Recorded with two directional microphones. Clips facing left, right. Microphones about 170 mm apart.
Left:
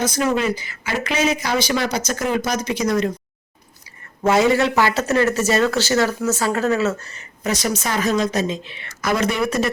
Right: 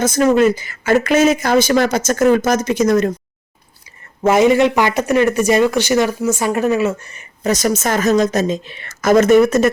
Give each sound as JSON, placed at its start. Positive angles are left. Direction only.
{"t": 0.0, "sound": "speech", "side_deg": -50}
{"t": 4.2, "sound": "speech", "side_deg": -20}
{"t": 7.4, "sound": "speech", "side_deg": -45}